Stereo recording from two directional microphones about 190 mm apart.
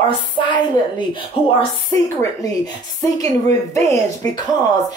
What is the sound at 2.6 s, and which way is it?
A woman's voice, 20° left (ahead or behind).